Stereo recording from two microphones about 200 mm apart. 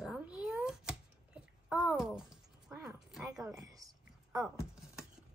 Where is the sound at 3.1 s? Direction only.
Centre (ahead or behind).